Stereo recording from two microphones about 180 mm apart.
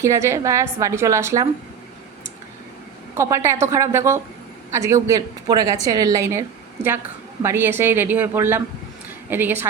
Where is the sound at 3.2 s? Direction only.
15° right (ahead or behind).